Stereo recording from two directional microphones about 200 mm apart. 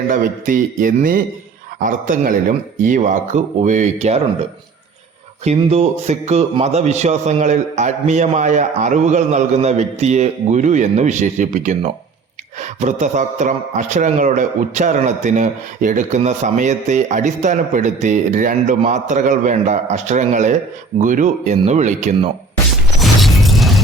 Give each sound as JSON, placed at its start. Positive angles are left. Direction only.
{"t": 0.1, "sound": "a man's voice", "side_deg": -40}
{"t": 5.4, "sound": "a man's voice", "side_deg": -35}
{"t": 23.0, "sound": "a sound", "side_deg": 0}